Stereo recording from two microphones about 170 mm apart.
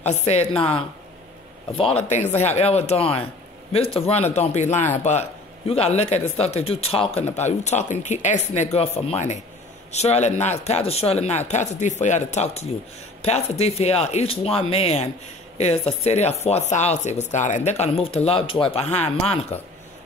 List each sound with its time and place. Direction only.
0.0 s speech: 40° left (ahead or behind)
1.8 s speech: 35° left (ahead or behind)